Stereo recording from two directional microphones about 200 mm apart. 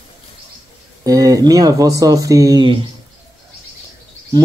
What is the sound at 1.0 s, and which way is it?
Speech, 15° right (ahead or behind).